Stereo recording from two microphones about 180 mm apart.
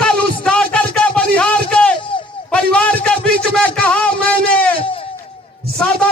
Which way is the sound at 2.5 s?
5° left (ahead or behind).